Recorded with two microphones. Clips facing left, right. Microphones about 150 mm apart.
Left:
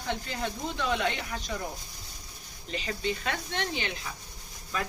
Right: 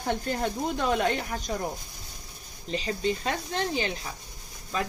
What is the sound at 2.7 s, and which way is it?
Speech, 35° right (ahead or behind).